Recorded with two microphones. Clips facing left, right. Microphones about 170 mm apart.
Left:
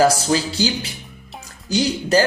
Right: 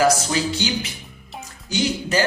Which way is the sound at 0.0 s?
35° left (ahead or behind).